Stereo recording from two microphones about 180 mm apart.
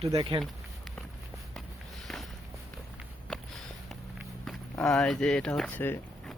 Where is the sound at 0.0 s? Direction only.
30° right (ahead or behind).